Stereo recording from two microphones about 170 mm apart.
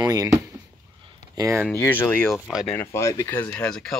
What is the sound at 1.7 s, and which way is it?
Speech, 15° left (ahead or behind).